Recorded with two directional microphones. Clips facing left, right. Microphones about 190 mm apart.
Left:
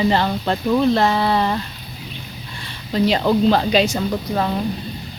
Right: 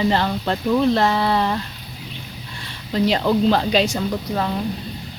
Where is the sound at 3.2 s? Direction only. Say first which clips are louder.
Left 2 dB; 20° left (ahead or behind).